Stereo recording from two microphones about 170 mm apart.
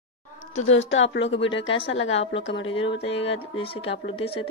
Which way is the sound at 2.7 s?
35° left (ahead or behind).